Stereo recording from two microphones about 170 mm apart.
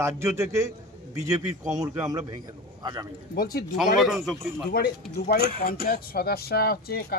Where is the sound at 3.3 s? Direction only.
60° left (ahead or behind).